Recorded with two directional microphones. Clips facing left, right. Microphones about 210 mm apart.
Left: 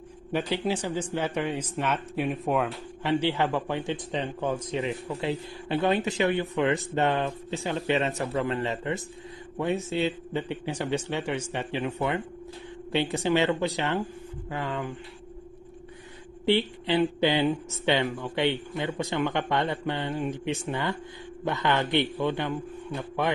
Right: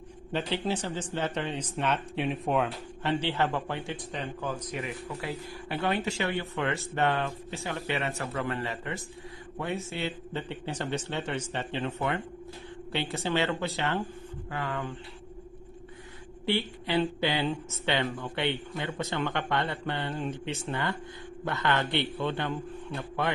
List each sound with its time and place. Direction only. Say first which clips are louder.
0.3 s speech: left 3 dB; 10° left (ahead or behind)
3.0 s speech: left 3 dB; 10° left (ahead or behind)
16.4 s speech: left 5 dB; 20° left (ahead or behind)